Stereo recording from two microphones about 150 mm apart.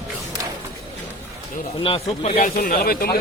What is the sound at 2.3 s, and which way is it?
Speech, 65° left (ahead or behind).